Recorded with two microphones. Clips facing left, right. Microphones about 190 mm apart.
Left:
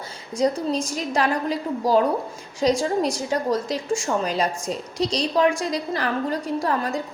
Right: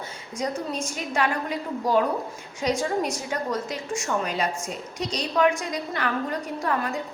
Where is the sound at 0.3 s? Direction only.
35° left (ahead or behind).